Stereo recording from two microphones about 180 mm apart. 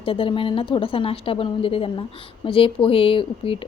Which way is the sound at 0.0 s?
30° left (ahead or behind).